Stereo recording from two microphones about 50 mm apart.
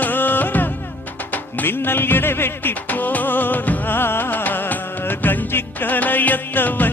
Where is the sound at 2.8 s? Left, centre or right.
Left.